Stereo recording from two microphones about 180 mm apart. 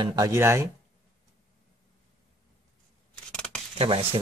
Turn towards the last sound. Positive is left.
turn(degrees=-30)  # may be behind; listen again after turning